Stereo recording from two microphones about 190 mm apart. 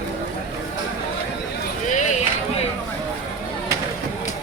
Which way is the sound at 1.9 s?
40° left (ahead or behind).